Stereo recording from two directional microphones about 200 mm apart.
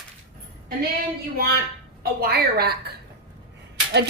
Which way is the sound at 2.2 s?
50° right (ahead or behind).